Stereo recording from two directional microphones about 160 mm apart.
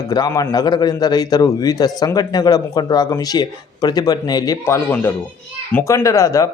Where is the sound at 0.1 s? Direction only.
25° left (ahead or behind).